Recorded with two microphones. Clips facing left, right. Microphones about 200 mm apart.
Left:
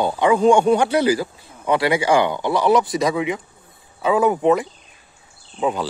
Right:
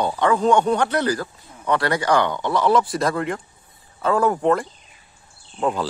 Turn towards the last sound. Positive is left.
turn(degrees=5)  # may be behind; listen again after turning